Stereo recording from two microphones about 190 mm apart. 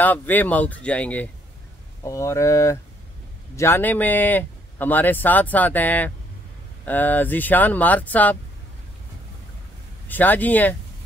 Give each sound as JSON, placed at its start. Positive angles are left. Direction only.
{"t": 0.0, "sound": "speech", "side_deg": 10}
{"t": 10.0, "sound": "speech", "side_deg": 10}